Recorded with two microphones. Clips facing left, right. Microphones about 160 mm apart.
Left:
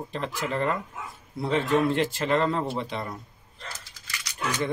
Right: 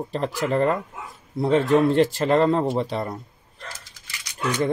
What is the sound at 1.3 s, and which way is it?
Speech, 25° right (ahead or behind).